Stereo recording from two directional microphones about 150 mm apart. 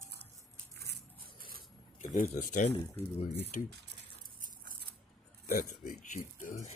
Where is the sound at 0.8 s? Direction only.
85° right.